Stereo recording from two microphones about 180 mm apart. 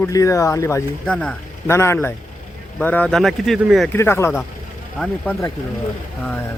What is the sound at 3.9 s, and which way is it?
Speech, 15° left (ahead or behind).